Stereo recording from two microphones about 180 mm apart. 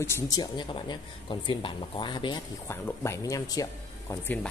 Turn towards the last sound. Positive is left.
turn(degrees=10)  # may be behind; listen again after turning